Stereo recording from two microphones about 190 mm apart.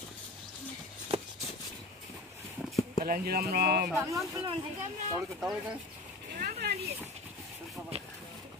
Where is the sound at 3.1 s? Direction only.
50° right (ahead or behind).